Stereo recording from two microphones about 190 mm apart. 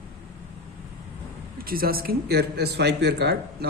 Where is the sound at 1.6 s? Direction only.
50° right (ahead or behind).